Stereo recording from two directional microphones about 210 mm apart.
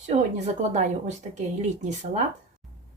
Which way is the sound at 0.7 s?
35° right (ahead or behind).